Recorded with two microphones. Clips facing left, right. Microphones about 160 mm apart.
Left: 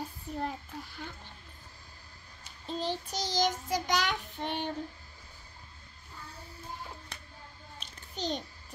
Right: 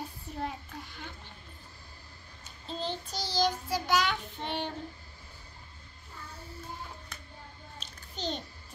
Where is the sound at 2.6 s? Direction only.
15° left (ahead or behind).